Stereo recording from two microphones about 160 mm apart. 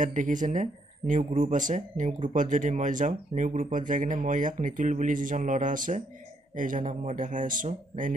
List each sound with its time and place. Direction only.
0.0 s speech: 55° right (ahead or behind)